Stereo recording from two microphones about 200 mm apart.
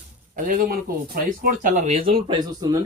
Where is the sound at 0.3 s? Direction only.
45° right (ahead or behind); by 2.7 s 20° right (ahead or behind).